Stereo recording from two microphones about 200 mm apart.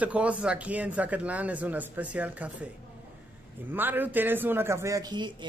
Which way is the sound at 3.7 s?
10° right (ahead or behind).